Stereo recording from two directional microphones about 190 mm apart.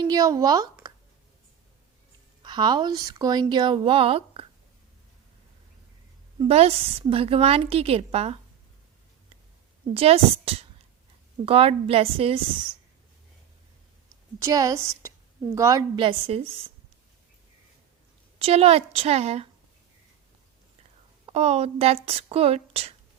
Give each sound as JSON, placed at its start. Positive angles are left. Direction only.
{"t": 0.1, "sound": "speech", "side_deg": -20}
{"t": 2.4, "sound": "a woman's voice", "side_deg": -25}
{"t": 6.4, "sound": "a woman's voice", "side_deg": -30}
{"t": 9.9, "sound": "a woman's voice", "side_deg": -30}
{"t": 14.4, "sound": "a woman's voice", "side_deg": -20}
{"t": 18.3, "sound": "a woman's voice", "side_deg": -30}
{"t": 21.2, "sound": "a woman's voice", "side_deg": -35}